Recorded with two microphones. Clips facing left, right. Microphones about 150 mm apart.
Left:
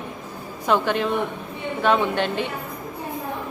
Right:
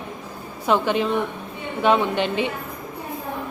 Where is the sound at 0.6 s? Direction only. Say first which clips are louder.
Right 1 dB; 10° right (ahead or behind).